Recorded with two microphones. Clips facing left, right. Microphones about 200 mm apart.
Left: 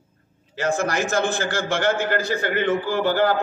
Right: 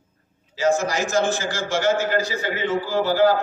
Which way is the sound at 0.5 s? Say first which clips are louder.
Right 2 dB; 55° left (ahead or behind).